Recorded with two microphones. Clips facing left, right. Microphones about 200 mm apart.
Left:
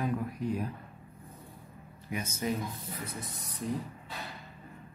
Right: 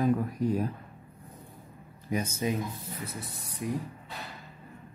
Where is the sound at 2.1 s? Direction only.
30° right (ahead or behind).